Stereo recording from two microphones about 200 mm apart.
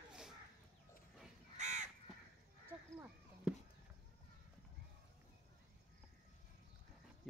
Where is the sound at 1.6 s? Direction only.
35° right (ahead or behind).